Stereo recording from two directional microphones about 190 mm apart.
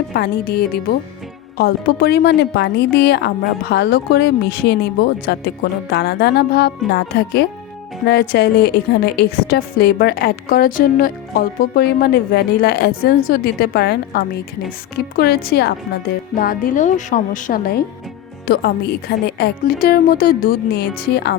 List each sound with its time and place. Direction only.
0.1 s a woman's voice: 60° left (ahead or behind)